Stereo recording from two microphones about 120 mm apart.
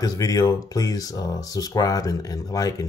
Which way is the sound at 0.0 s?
30° left (ahead or behind).